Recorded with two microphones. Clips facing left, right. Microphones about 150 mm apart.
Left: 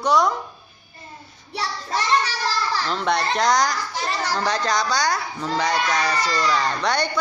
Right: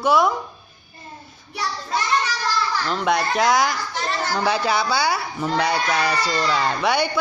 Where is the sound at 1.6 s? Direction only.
35° left (ahead or behind).